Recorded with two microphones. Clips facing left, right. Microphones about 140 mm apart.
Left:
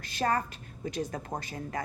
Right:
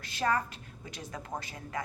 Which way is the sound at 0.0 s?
45° left (ahead or behind).